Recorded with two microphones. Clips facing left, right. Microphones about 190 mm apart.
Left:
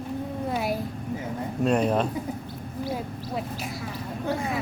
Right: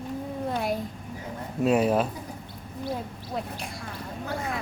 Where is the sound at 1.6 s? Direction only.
5° right (ahead or behind).